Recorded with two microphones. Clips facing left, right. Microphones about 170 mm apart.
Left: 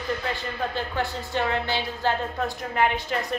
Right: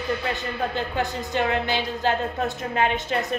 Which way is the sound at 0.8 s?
15° right (ahead or behind).